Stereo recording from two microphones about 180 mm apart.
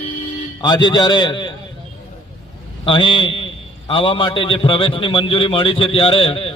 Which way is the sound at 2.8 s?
25° left (ahead or behind).